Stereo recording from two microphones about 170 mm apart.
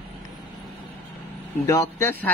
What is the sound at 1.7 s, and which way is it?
Speech, 15° left (ahead or behind).